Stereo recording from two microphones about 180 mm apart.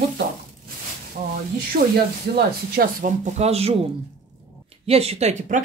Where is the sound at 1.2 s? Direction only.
45° right (ahead or behind).